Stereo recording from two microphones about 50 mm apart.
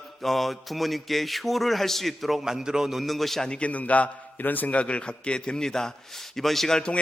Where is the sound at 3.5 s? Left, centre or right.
Left; by 6.8 s centre.